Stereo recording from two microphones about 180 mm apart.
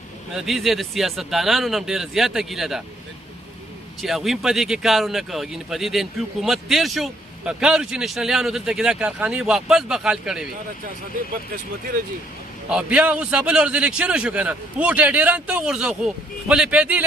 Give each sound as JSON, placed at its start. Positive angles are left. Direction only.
{"t": 0.3, "sound": "speech", "side_deg": 0}
{"t": 4.0, "sound": "speech", "side_deg": 0}
{"t": 12.6, "sound": "speech", "side_deg": -5}